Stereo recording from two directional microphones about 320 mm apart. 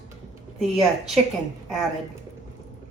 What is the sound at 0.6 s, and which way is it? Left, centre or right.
Speech, centre.